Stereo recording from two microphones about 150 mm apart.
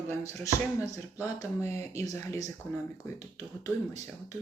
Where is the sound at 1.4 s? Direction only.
20° left (ahead or behind).